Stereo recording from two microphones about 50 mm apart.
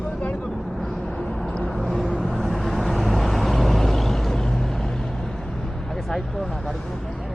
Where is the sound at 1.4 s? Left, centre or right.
Centre.